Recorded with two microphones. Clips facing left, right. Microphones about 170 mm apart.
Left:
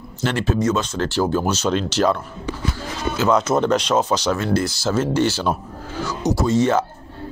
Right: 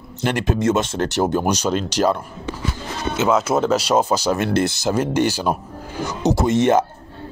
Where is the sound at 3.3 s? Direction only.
5° right (ahead or behind).